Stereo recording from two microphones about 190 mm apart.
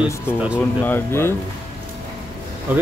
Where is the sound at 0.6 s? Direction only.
10° left (ahead or behind).